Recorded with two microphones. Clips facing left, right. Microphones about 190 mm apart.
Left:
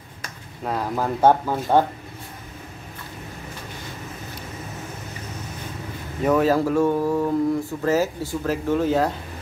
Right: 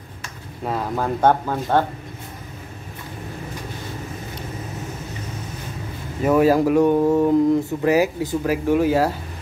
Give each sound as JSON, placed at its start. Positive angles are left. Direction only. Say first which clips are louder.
{"t": 0.7, "sound": "speech", "louder": "right 1 dB", "side_deg": 0}
{"t": 6.2, "sound": "speech", "louder": "right 3 dB", "side_deg": -10}